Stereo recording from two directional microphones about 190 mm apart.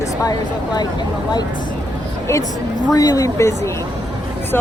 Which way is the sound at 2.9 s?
20° left (ahead or behind).